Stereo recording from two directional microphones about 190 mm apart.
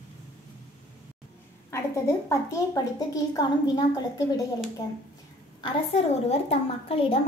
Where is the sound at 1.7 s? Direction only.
15° left (ahead or behind).